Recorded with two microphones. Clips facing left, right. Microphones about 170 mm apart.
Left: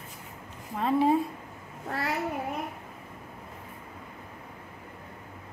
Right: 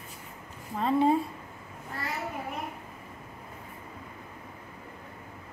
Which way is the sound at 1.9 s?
75° left (ahead or behind).